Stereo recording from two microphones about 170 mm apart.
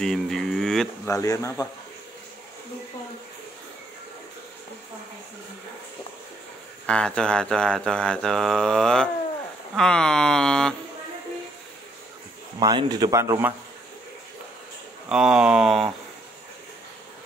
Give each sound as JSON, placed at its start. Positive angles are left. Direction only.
{"t": 0.0, "sound": "a sound", "side_deg": 5}
{"t": 1.0, "sound": "speech", "side_deg": 20}
{"t": 6.9, "sound": "mantra", "side_deg": 5}
{"t": 12.5, "sound": "speech", "side_deg": -25}
{"t": 15.0, "sound": "mantra", "side_deg": -5}